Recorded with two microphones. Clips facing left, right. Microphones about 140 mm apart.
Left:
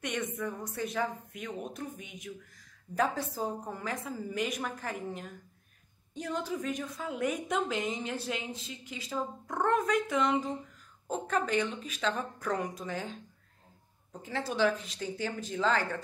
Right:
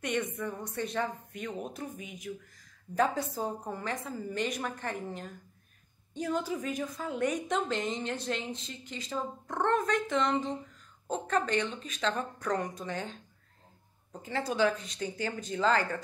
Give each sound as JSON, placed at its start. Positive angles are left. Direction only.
{"t": 0.0, "sound": "a woman's voice", "side_deg": 0}
{"t": 14.2, "sound": "a woman's voice", "side_deg": 0}